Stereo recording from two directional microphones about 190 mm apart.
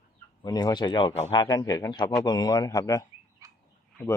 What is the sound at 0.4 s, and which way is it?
Speech, 20° left (ahead or behind).